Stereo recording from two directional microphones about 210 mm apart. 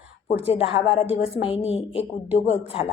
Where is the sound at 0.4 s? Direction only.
25° left (ahead or behind).